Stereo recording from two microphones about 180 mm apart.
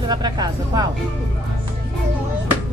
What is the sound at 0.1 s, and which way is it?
Speech, 25° right (ahead or behind).